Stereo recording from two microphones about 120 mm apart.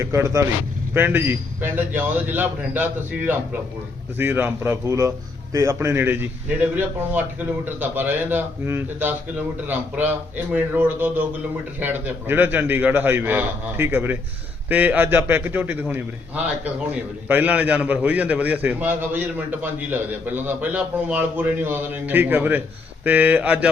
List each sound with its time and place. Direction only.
0.0 s a man's voice: 25° right (ahead or behind)